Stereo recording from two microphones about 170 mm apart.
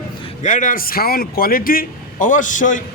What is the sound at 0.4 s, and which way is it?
Speech, 50° left (ahead or behind).